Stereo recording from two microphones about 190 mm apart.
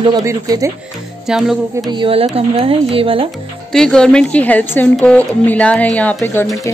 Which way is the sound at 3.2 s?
5° left (ahead or behind).